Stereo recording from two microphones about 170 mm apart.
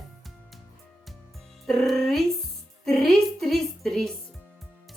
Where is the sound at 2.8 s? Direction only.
Centre (ahead or behind).